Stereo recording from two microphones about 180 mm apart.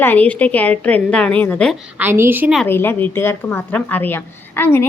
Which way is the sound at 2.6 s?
10° left (ahead or behind).